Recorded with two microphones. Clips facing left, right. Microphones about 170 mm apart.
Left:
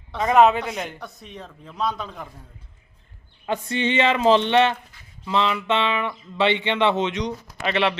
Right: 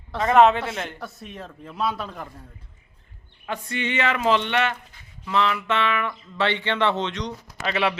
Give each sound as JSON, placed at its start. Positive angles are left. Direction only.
{"t": 0.1, "sound": "a man's voice", "side_deg": 0}
{"t": 0.9, "sound": "speech", "side_deg": -5}
{"t": 3.4, "sound": "speech", "side_deg": 25}
{"t": 7.6, "sound": "speech", "side_deg": 0}